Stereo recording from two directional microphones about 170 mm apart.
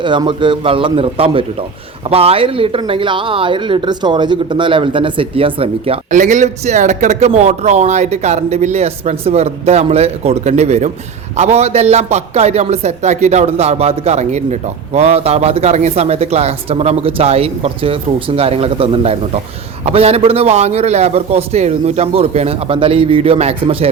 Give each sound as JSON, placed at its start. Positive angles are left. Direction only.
{"t": 0.0, "sound": "a man's voice", "side_deg": -25}
{"t": 6.1, "sound": "speech", "side_deg": -45}